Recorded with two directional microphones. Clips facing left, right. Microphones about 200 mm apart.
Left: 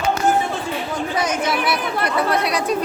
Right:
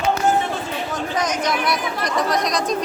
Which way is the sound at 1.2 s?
10° left (ahead or behind).